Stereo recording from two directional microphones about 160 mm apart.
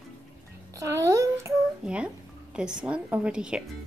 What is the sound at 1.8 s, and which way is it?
A child's voice, 5° right (ahead or behind).